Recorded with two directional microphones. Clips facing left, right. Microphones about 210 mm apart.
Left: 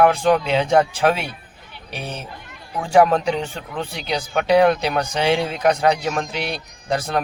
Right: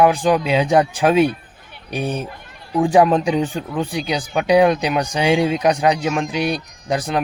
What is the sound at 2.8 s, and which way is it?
Speech, 15° right (ahead or behind).